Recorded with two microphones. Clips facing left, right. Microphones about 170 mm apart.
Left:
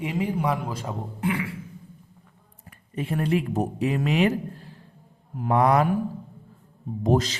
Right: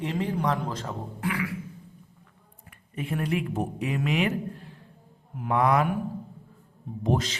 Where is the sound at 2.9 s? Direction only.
35° left (ahead or behind).